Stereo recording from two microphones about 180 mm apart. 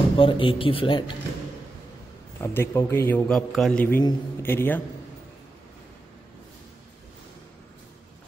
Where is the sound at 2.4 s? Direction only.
15° left (ahead or behind).